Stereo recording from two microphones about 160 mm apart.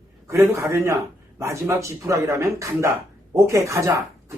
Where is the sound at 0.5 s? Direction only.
20° right (ahead or behind).